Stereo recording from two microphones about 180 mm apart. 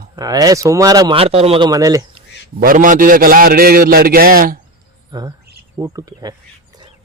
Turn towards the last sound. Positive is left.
turn(degrees=-20)  # may be behind; listen again after turning